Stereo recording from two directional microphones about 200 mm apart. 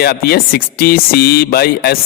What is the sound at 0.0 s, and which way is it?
Speech, 50° left (ahead or behind).